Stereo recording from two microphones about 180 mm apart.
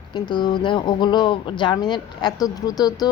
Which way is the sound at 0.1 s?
25° left (ahead or behind).